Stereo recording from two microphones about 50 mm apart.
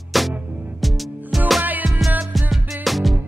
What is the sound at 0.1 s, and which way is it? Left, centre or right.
Music, centre.